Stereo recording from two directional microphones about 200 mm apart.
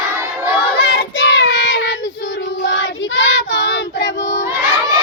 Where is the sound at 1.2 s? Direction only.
65° left (ahead or behind).